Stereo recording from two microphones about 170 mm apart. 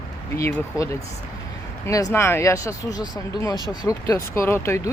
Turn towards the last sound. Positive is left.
turn(degrees=15)  # may be behind; listen again after turning